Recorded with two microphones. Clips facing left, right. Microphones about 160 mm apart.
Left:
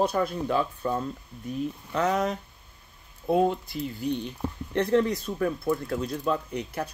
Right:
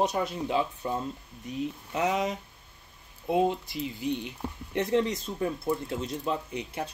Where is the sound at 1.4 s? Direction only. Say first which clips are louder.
Left 2 dB; 50° left (ahead or behind).